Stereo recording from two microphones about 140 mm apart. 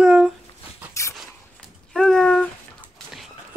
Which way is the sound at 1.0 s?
20° left (ahead or behind).